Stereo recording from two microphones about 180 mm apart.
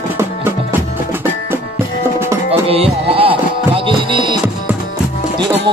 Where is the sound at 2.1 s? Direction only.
15° right (ahead or behind).